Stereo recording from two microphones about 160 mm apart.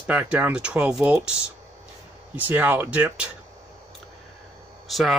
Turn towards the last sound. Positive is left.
turn(degrees=0)  # may be behind; listen again after turning